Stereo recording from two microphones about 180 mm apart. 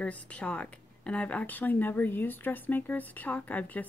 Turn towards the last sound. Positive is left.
turn(degrees=10)  # may be behind; listen again after turning